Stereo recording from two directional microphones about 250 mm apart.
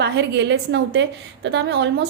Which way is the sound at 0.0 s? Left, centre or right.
Right.